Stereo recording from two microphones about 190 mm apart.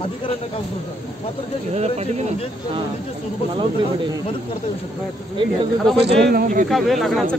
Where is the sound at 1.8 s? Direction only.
35° right (ahead or behind).